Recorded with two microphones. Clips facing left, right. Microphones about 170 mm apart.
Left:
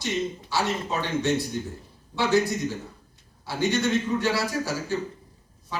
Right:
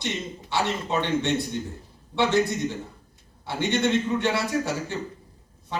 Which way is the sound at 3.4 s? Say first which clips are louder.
Even; 25° right (ahead or behind).